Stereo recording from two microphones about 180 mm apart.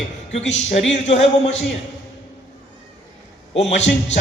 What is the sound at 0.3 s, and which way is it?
Speech, 40° left (ahead or behind).